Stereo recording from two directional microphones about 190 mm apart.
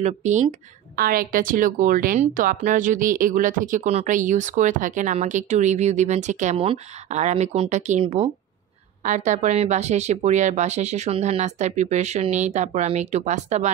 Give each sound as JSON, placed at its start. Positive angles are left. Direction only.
{"t": 0.0, "sound": "speech", "side_deg": -40}
{"t": 8.0, "sound": "speech", "side_deg": -25}
{"t": 9.0, "sound": "speech", "side_deg": -40}